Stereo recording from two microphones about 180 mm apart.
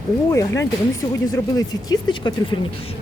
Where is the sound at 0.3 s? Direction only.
15° left (ahead or behind).